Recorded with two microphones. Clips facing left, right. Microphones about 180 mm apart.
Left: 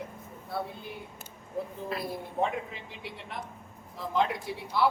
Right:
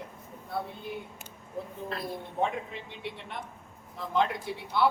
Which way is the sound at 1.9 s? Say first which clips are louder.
Left 1 dB; 5° left (ahead or behind).